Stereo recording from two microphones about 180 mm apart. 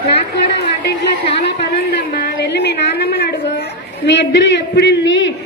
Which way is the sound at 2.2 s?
70° left (ahead or behind).